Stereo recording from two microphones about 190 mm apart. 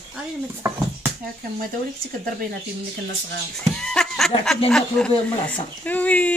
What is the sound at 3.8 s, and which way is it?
Laughter, 5° left (ahead or behind).